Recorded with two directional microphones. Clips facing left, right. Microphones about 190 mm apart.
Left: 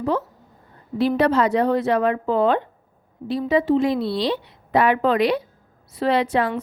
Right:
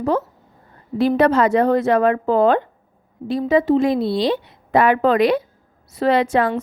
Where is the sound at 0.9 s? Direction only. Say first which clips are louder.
Right 3 dB; 50° right (ahead or behind).